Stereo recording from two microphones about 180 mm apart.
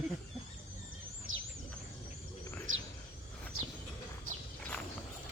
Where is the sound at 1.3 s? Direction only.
90° right.